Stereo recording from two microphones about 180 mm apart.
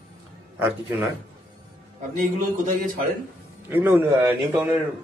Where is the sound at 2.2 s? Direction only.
45° right (ahead or behind).